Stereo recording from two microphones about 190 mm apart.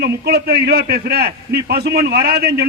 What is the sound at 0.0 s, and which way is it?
A man's voice, 55° right (ahead or behind).